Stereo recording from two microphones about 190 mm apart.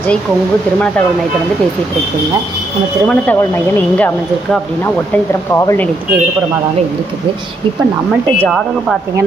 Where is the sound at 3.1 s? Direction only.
10° left (ahead or behind).